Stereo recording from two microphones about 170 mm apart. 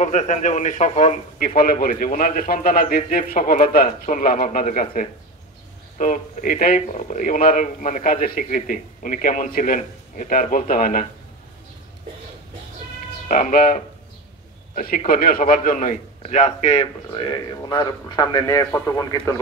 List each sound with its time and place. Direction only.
0.0 s speech: 45° left (ahead or behind)
13.3 s a man's voice: 50° left (ahead or behind); by 19.4 s 20° left (ahead or behind)